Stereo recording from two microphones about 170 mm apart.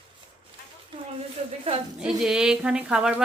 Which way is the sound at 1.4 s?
40° right (ahead or behind).